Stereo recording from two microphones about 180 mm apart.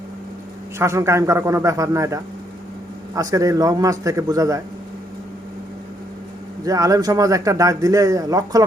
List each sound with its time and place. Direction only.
0.8 s a man's voice: 15° right (ahead or behind)
6.7 s a man's voice: 20° right (ahead or behind)